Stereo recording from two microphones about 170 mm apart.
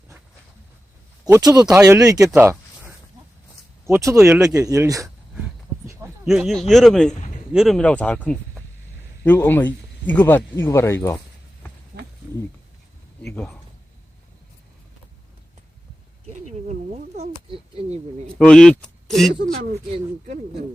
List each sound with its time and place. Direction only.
1.2 s speech: 20° right (ahead or behind)
6.2 s speech: centre (ahead or behind); by 11.2 s 15° left (ahead or behind)
13.2 s speech: 5° left (ahead or behind)
16.2 s a sound: 40° right (ahead or behind)
18.3 s speech: 5° left (ahead or behind)
19.9 s speech: 45° right (ahead or behind)